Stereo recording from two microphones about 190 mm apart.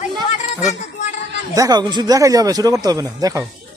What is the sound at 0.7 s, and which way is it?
Speech, 40° left (ahead or behind).